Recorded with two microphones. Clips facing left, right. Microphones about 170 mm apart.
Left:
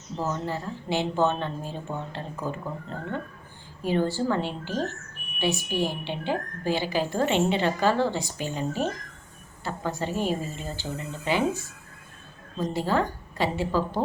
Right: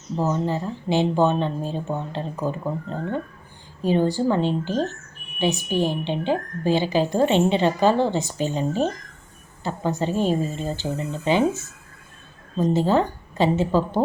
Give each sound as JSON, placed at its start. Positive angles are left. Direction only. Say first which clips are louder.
{"t": 0.2, "sound": "a woman's voice", "louder": "right 6 dB", "side_deg": -15}